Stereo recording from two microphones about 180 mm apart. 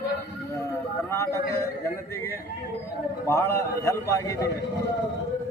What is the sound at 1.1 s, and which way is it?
Speech, 15° left (ahead or behind).